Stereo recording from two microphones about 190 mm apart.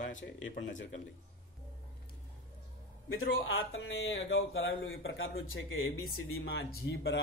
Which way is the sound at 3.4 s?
90° left.